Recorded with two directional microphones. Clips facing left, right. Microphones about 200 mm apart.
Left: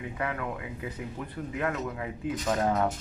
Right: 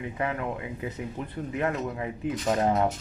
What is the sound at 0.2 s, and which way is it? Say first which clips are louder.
Speech: right 3 dB; 25° right (ahead or behind).